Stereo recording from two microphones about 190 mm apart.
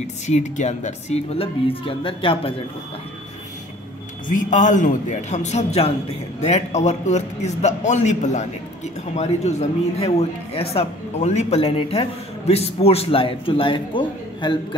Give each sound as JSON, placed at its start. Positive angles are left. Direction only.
{"t": 0.0, "sound": "speech", "side_deg": 40}
{"t": 4.3, "sound": "speech", "side_deg": 40}